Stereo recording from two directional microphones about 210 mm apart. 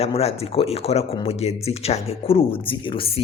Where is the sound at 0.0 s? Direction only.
30° left (ahead or behind).